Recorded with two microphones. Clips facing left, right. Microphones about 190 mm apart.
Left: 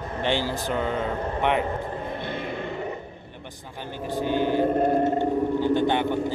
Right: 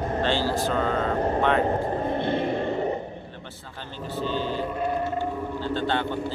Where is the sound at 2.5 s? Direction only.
35° right (ahead or behind).